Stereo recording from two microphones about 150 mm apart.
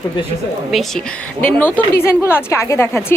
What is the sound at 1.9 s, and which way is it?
A woman's voice, 15° left (ahead or behind).